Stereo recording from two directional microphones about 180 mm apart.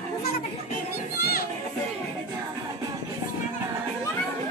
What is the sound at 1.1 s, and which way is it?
Music, 60° left (ahead or behind).